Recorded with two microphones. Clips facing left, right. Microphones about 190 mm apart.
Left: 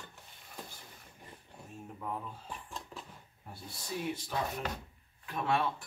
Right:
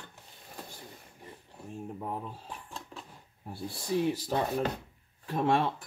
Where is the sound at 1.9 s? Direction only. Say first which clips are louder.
Left 1 dB; 30° right (ahead or behind).